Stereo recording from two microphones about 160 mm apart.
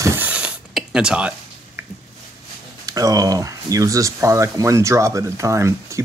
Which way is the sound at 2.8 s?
20° right (ahead or behind).